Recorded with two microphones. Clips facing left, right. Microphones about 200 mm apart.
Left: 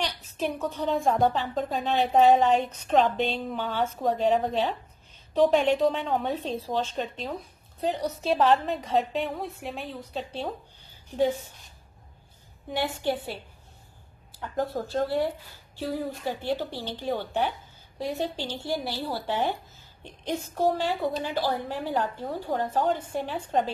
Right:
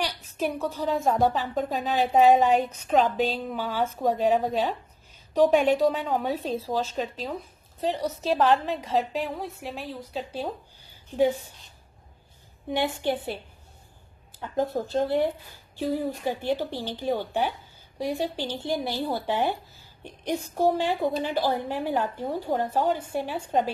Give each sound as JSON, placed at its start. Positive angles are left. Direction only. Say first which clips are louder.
{"t": 0.0, "sound": "a woman's voice", "louder": "right 1 dB", "side_deg": -10}
{"t": 12.7, "sound": "speech", "louder": "right 2 dB", "side_deg": -20}
{"t": 14.4, "sound": "a woman's voice", "louder": "right 2 dB", "side_deg": -20}